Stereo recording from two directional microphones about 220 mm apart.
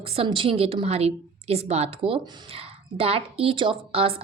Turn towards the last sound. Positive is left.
turn(degrees=-25)  # may be behind; listen again after turning